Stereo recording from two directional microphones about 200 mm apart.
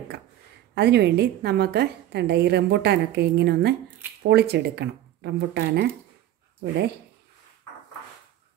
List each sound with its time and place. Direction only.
0.7 s a woman's voice: 55° right (ahead or behind)